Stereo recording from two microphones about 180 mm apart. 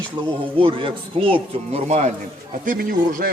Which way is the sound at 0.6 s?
30° right (ahead or behind).